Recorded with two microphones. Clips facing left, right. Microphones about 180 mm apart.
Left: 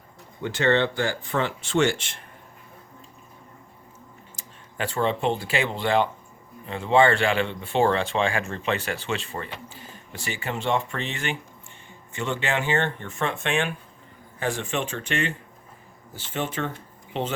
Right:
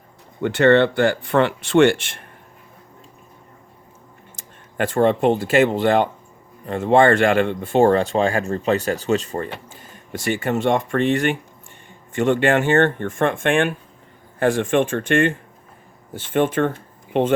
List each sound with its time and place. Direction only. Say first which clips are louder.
0.4 s speech: right 8 dB; 60° right (ahead or behind)
4.4 s speech: right 8 dB; 50° right (ahead or behind)